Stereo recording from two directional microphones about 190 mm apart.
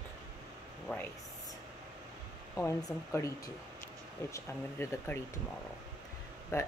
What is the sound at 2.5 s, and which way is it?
Speech, 15° left (ahead or behind).